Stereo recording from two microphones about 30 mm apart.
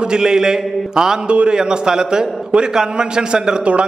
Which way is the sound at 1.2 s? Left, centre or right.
Right.